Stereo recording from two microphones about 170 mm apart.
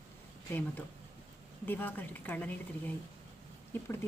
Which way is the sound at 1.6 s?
10° left (ahead or behind).